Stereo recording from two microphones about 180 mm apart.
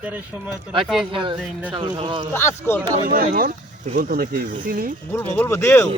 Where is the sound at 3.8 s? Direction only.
50° right (ahead or behind).